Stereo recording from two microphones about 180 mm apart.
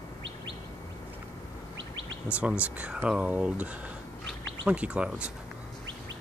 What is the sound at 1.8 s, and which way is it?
Chirp, 90° right.